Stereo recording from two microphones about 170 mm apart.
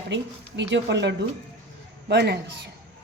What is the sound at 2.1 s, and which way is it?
Speech, 75° right (ahead or behind).